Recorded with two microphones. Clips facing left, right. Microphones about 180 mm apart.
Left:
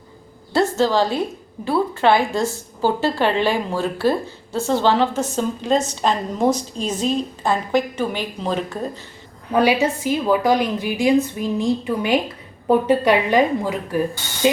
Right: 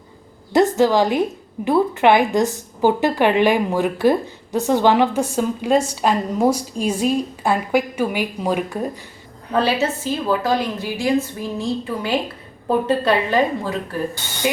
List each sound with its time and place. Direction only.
0.5 s a woman's voice: 15° right (ahead or behind)
9.5 s a woman's voice: 10° left (ahead or behind)